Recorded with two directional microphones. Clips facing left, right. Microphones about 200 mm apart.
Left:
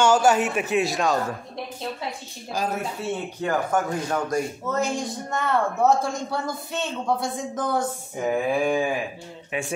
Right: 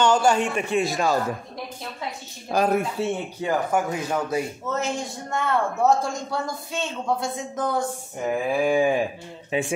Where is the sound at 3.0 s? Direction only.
30° right (ahead or behind).